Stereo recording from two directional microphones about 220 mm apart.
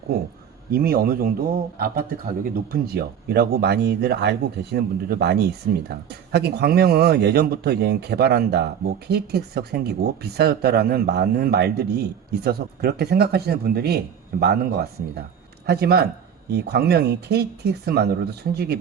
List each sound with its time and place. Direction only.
0.1 s a man's voice: 45° right (ahead or behind)